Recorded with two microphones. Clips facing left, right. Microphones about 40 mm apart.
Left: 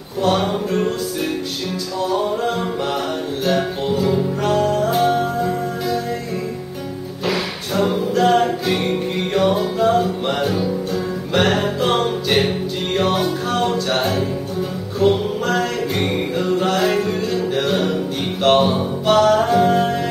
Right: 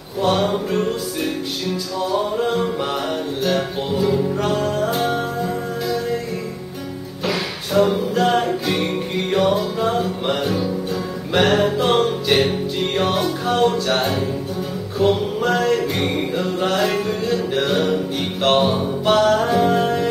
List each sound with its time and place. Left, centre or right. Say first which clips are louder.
0.2 s music: even; centre
2.3 s music: right 1 dB; centre
3.9 s music: right 1 dB; centre
7.2 s music: left 1 dB; centre